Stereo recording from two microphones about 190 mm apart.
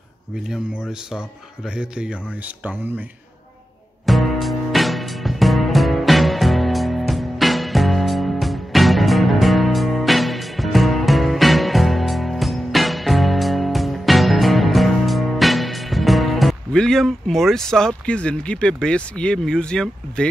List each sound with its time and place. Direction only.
0.5 s speech: 5° right (ahead or behind)
4.0 s music: centre (ahead or behind)